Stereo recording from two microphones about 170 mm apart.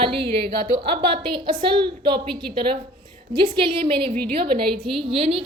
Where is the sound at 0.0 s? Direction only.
30° right (ahead or behind).